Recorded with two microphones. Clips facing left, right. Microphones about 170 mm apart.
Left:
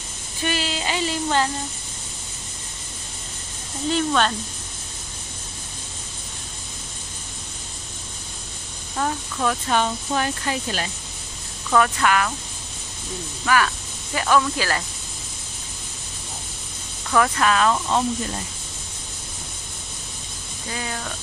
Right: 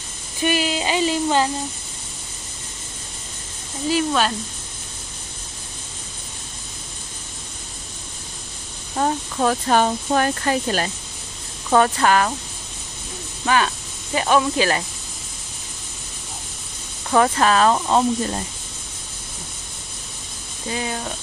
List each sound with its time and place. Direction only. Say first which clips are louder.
0.4 s a sound: right 5 dB; 15° right (ahead or behind)
3.9 s speech: right 1 dB; 5° right (ahead or behind)
8.9 s speech: right 4 dB; 35° right (ahead or behind)
11.7 s speech: right 3 dB; 35° right (ahead or behind)
13.5 s speech: right 1 dB; 25° right (ahead or behind)
17.1 s speech: right 3 dB; 30° right (ahead or behind)
20.7 s speech: right 4 dB; 20° right (ahead or behind)